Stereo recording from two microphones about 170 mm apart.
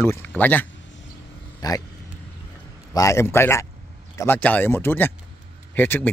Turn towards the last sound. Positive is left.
turn(degrees=10)  # may be behind; listen again after turning